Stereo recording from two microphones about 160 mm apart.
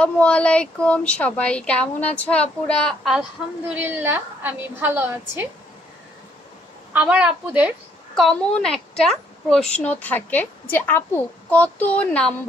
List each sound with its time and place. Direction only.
0.0 s speech: 5° left (ahead or behind); by 5.5 s 15° right (ahead or behind)
6.9 s a woman's voice: 10° right (ahead or behind)
8.2 s speech: 5° left (ahead or behind)